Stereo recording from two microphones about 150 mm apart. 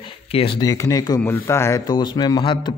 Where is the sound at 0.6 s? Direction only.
20° left (ahead or behind).